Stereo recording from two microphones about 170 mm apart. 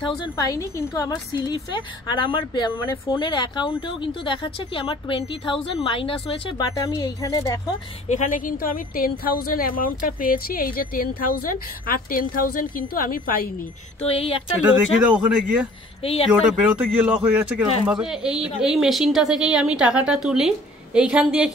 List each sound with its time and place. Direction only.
0.0 s a woman's voice: 20° left (ahead or behind)
6.6 s a woman's voice: 20° left (ahead or behind)
8.1 s a woman's voice: 50° left (ahead or behind)
14.0 s speech: 35° left (ahead or behind)
15.0 s a woman's voice: 5° right (ahead or behind)
16.0 s speech: 35° left (ahead or behind)
16.3 s a man's voice: 5° right (ahead or behind)